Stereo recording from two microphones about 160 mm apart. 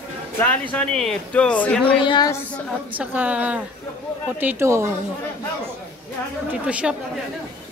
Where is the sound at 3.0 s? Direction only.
10° right (ahead or behind).